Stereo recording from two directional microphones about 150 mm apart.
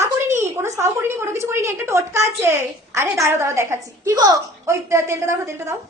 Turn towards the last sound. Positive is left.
turn(degrees=-20)  # may be behind; listen again after turning